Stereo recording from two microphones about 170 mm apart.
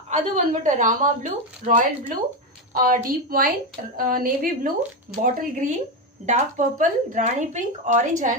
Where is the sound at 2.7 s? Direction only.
55° right (ahead or behind).